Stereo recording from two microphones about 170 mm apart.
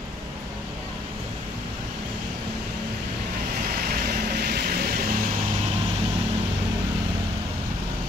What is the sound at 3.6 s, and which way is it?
Vehicle, 55° right (ahead or behind).